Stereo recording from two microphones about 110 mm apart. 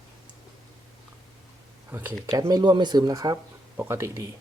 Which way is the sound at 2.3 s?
35° right (ahead or behind).